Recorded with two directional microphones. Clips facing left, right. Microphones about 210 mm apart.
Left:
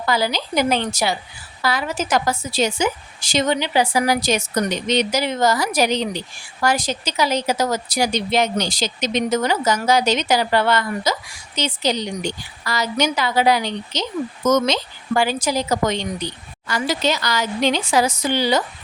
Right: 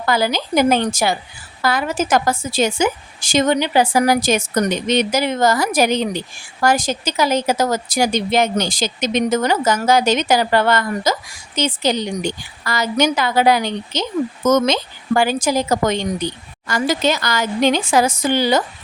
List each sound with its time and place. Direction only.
0.0 s a woman's voice: 50° right (ahead or behind)